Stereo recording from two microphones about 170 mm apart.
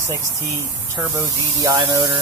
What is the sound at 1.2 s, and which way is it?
Speech, 20° right (ahead or behind).